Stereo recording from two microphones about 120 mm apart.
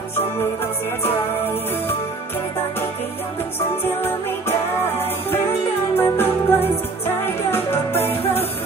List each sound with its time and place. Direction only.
1.0 s music: 20° left (ahead or behind)
3.8 s music: 20° left (ahead or behind)
5.9 s music: 20° left (ahead or behind)